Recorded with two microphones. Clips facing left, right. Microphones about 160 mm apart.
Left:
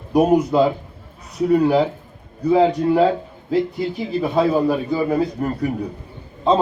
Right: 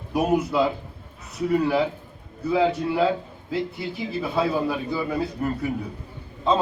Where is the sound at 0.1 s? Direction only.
40° left (ahead or behind).